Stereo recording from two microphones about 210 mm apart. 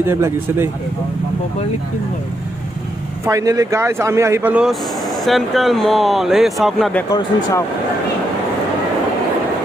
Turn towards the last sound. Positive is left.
turn(degrees=15)  # may be behind; listen again after turning